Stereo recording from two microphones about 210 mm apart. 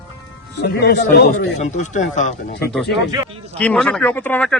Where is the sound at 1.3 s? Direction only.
35° left (ahead or behind).